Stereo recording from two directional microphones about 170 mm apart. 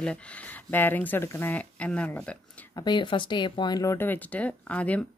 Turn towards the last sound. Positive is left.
turn(degrees=10)  # may be behind; listen again after turning